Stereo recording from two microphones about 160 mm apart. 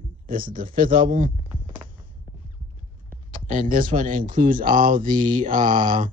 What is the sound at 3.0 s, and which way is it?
Speech, 60° right (ahead or behind).